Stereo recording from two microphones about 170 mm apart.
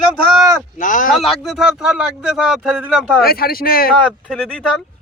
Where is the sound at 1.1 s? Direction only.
Centre (ahead or behind).